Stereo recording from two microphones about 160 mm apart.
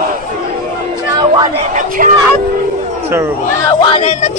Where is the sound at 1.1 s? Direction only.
25° right (ahead or behind).